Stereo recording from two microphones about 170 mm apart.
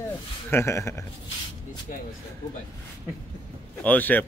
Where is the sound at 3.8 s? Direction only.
10° left (ahead or behind).